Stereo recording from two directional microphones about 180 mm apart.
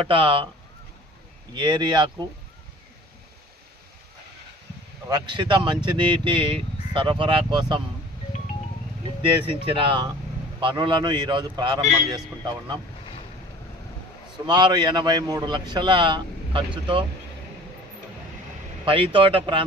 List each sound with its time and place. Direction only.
0.0 s speech: 30° right (ahead or behind)
1.5 s speech: 25° right (ahead or behind)
5.1 s speech: 25° right (ahead or behind)
9.5 s speech: 30° right (ahead or behind)
14.4 s speech: 25° right (ahead or behind)
18.9 s speech: 30° right (ahead or behind)